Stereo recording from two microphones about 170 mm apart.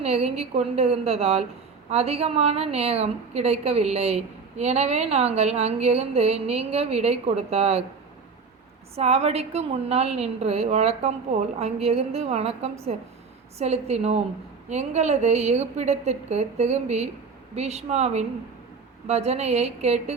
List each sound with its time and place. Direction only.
0.0 s a woman's voice: 40° right (ahead or behind)
9.0 s a woman's voice: 40° right (ahead or behind)